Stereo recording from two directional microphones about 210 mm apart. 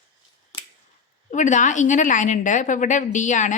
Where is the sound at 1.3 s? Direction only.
35° left (ahead or behind).